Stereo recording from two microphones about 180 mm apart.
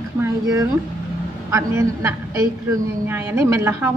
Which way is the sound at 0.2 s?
20° right (ahead or behind).